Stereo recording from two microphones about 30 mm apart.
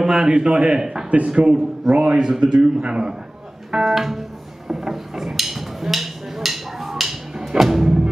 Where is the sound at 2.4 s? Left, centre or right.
Right.